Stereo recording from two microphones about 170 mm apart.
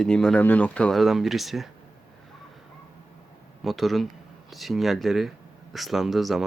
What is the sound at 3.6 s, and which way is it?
Speech, centre (ahead or behind).